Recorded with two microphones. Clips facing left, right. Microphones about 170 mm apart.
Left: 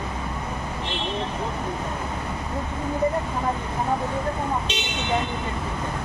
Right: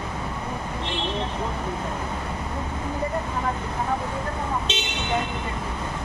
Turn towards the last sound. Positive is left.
turn(degrees=-25)  # may be behind; listen again after turning